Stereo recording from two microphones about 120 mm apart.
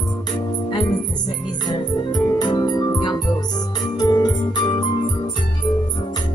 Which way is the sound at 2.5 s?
35° left (ahead or behind).